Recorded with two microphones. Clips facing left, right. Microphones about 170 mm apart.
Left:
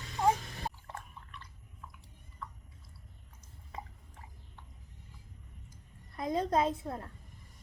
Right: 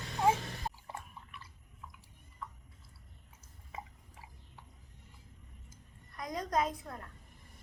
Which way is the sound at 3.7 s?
5° right (ahead or behind).